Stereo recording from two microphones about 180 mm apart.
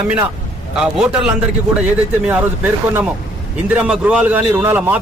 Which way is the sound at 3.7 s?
5° right (ahead or behind).